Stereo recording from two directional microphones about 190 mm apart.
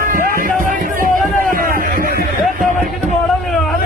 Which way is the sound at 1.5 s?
50° right (ahead or behind).